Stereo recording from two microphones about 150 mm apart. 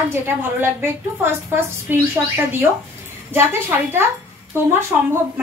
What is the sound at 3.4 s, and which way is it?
Speech, 15° right (ahead or behind).